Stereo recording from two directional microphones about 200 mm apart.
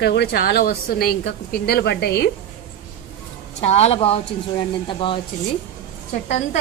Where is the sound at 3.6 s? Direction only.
30° left (ahead or behind).